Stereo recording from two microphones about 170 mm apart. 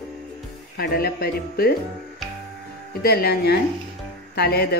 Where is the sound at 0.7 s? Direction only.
65° left (ahead or behind).